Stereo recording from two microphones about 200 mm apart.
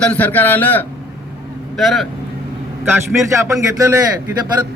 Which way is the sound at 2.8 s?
15° right (ahead or behind).